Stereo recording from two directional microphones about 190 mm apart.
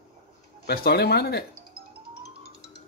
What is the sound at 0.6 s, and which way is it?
Speech, 55° left (ahead or behind).